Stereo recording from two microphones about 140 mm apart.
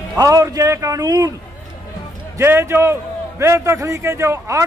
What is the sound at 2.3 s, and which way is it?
A man's voice, 20° right (ahead or behind).